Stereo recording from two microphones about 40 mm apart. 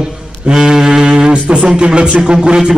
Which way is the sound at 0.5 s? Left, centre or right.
Centre.